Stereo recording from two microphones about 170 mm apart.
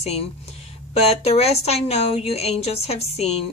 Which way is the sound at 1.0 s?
35° left (ahead or behind).